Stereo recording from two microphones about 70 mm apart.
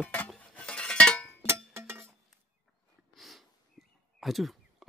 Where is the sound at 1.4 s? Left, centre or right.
Right.